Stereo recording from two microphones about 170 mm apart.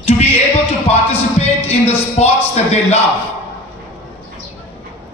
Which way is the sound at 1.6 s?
40° left (ahead or behind).